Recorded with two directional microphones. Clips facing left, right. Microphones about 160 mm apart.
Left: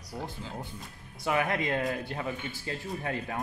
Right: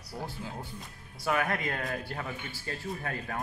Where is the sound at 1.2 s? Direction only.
20° left (ahead or behind).